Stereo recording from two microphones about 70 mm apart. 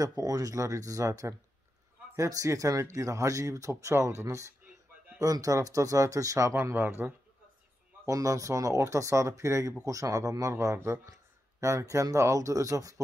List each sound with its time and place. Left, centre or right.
0.0 s speech: right
5.2 s speech: right
6.5 s speech: right
8.0 s speech: right